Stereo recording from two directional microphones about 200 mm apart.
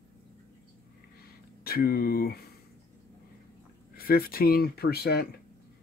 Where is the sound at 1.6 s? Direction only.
50° left (ahead or behind).